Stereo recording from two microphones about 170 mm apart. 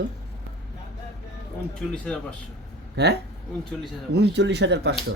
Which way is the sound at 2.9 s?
80° right.